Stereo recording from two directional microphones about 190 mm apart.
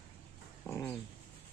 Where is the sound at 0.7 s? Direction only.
10° left (ahead or behind).